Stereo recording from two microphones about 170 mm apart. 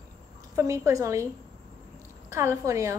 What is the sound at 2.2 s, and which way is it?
Speech, 15° right (ahead or behind).